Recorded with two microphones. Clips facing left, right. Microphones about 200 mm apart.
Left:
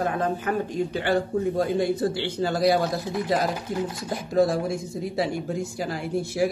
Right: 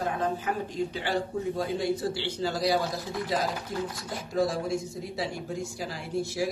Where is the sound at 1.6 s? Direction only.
55° left (ahead or behind).